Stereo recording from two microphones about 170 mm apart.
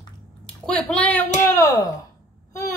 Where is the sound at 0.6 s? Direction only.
5° left (ahead or behind).